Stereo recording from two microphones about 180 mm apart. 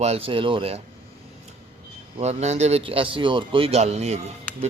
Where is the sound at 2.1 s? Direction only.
35° right (ahead or behind).